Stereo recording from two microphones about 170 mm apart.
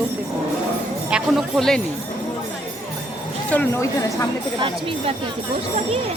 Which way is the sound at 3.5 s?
10° left (ahead or behind).